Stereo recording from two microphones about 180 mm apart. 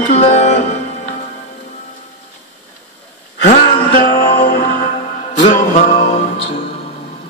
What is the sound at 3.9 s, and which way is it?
Music, 55° left (ahead or behind).